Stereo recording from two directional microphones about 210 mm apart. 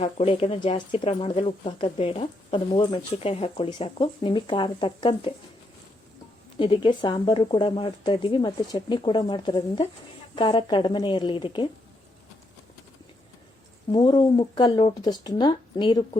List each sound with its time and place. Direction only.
0.0 s speech: 30° left (ahead or behind)
6.6 s speech: 20° left (ahead or behind)
13.9 s speech: 20° left (ahead or behind)